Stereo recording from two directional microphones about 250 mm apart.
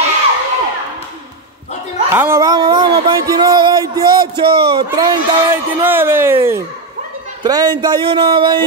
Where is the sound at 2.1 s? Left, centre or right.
Centre.